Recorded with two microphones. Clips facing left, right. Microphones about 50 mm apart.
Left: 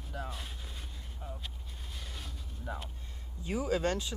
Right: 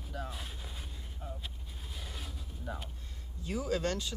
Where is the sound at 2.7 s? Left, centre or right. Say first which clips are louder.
Left 1 dB; centre.